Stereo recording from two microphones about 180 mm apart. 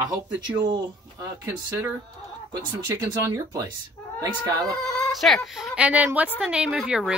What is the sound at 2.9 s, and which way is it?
Speech, 20° right (ahead or behind).